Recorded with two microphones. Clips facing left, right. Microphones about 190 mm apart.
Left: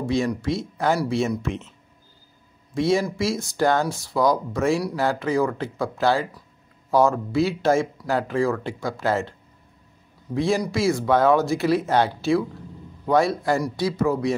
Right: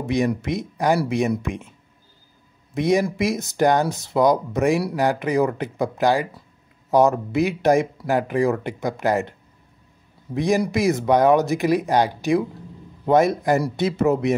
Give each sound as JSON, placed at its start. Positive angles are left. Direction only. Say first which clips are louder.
{"t": 0.0, "sound": "speech", "louder": "right 1 dB", "side_deg": -20}
{"t": 2.7, "sound": "speech", "louder": "right 2 dB", "side_deg": -15}
{"t": 10.3, "sound": "a man's voice", "louder": "right 2 dB", "side_deg": -20}